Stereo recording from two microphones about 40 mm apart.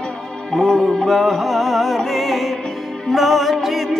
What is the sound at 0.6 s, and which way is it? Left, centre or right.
Music, centre.